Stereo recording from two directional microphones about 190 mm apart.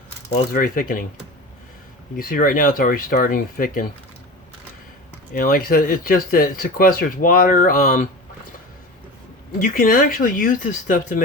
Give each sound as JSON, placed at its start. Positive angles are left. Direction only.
{"t": 0.3, "sound": "speech", "side_deg": 35}
{"t": 0.6, "sound": "speech", "side_deg": 50}
{"t": 2.1, "sound": "speech", "side_deg": 50}
{"t": 5.3, "sound": "speech", "side_deg": 50}
{"t": 9.6, "sound": "speech", "side_deg": 45}